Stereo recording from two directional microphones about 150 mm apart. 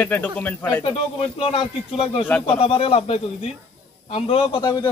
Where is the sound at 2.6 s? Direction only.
40° left (ahead or behind).